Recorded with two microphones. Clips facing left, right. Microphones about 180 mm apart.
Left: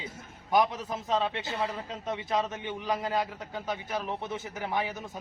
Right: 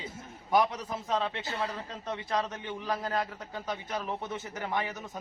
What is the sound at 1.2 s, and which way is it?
Speech, 20° left (ahead or behind).